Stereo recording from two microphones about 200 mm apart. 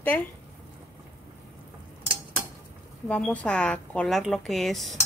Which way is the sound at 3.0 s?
5° left (ahead or behind).